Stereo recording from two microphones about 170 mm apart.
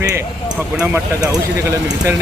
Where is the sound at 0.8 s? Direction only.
15° right (ahead or behind).